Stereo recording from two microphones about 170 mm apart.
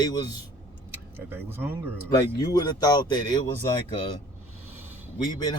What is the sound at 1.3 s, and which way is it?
Speech, 10° right (ahead or behind).